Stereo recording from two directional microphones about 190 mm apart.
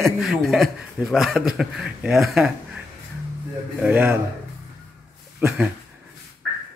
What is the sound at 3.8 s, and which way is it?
Speech, 10° right (ahead or behind).